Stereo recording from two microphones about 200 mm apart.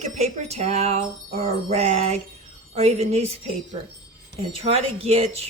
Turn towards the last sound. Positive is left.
turn(degrees=-30)  # may be behind; listen again after turning